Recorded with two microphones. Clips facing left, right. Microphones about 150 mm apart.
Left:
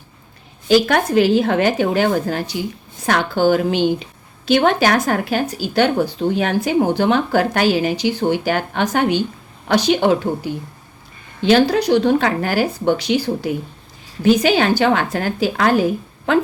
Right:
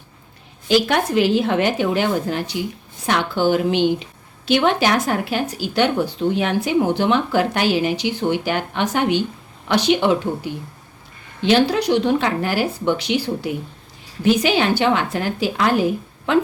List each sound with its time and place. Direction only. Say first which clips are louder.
0.7 s speech: left 3 dB; 45° left (ahead or behind)